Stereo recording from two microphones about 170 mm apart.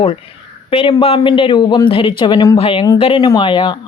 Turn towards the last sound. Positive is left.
turn(degrees=30)  # may be behind; listen again after turning